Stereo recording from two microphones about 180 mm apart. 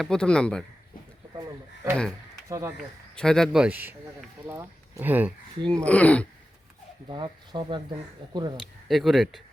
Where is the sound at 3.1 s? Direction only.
5° left (ahead or behind).